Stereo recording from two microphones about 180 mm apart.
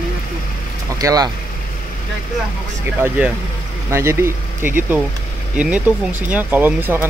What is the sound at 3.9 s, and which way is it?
Speech, 15° right (ahead or behind).